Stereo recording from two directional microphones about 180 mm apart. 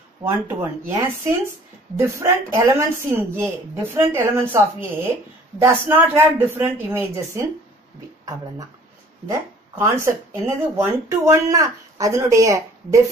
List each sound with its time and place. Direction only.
0.2 s speech: 15° right (ahead or behind)
9.3 s speech: 15° right (ahead or behind)